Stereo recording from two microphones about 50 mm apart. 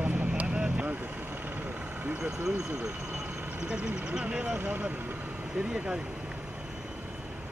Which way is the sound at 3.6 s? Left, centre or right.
Right.